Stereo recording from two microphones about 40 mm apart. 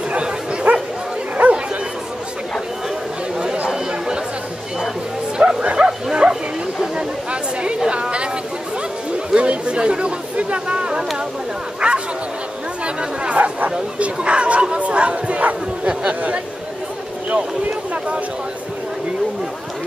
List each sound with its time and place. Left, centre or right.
0.1 s bow-wow: right
1.4 s dog: right
5.4 s bow-wow: right
5.8 s bow-wow: centre
7.6 s chatter: right
9.3 s chatter: right
11.8 s bow-wow: right
12.8 s chatter: right
13.9 s crowd: right
16.1 s a sound: right